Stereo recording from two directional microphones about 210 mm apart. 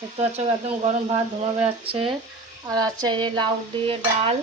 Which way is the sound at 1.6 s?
25° right (ahead or behind).